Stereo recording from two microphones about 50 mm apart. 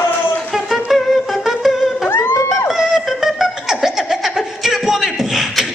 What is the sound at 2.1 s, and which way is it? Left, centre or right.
Music, left.